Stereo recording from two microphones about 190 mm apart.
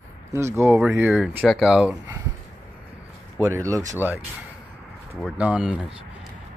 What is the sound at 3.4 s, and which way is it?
Speech, 15° right (ahead or behind).